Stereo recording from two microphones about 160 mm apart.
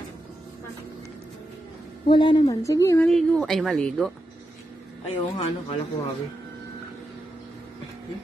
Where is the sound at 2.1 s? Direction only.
30° left (ahead or behind).